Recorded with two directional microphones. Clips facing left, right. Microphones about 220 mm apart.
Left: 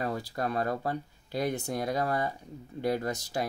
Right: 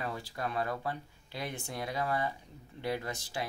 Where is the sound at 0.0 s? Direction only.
40° left (ahead or behind).